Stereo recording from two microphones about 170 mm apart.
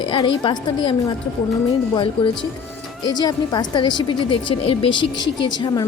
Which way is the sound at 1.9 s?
30° left (ahead or behind).